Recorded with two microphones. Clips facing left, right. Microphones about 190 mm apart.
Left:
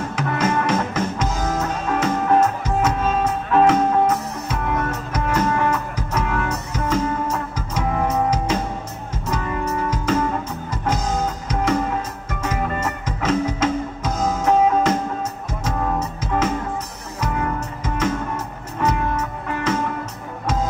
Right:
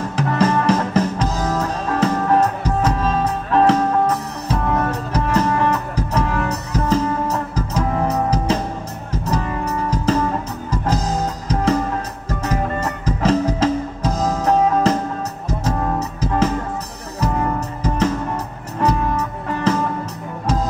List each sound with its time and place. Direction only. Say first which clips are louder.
0.1 s music: right 4 dB; 35° right (ahead or behind)
9.8 s music: right 3 dB; 35° right (ahead or behind)
17.8 s music: right 3 dB; 35° right (ahead or behind)